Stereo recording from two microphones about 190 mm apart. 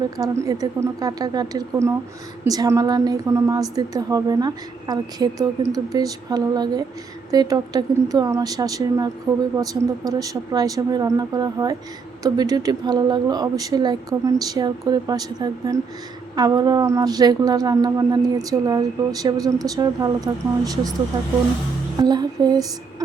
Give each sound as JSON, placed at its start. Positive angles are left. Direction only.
{"t": 0.2, "sound": "a woman's voice", "side_deg": -20}
{"t": 22.0, "sound": "speech", "side_deg": -20}